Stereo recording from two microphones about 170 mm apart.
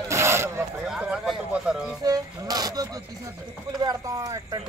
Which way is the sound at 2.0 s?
20° right (ahead or behind).